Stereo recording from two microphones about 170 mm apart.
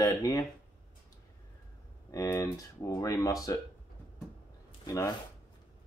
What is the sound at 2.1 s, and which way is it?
Speech, 20° left (ahead or behind).